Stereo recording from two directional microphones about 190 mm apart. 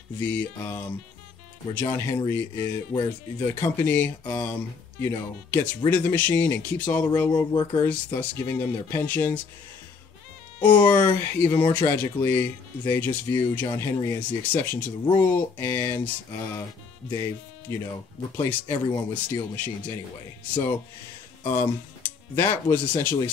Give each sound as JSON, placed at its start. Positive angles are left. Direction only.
{"t": 0.2, "sound": "speech", "side_deg": 10}
{"t": 7.2, "sound": "speech", "side_deg": 20}
{"t": 7.7, "sound": "speech", "side_deg": 10}
{"t": 10.8, "sound": "speech", "side_deg": 10}
{"t": 18.9, "sound": "speech", "side_deg": 25}
{"t": 19.5, "sound": "speech", "side_deg": 10}